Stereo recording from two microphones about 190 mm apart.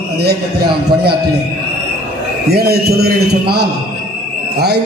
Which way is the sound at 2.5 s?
55° right (ahead or behind).